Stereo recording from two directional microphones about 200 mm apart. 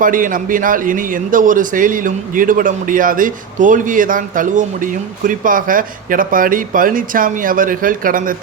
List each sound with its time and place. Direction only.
0.0 s a man's voice: 45° right (ahead or behind)